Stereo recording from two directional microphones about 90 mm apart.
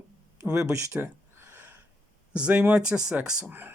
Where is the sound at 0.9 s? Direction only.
20° right (ahead or behind).